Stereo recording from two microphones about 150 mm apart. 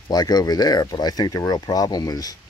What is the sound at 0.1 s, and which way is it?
Speech, 25° left (ahead or behind).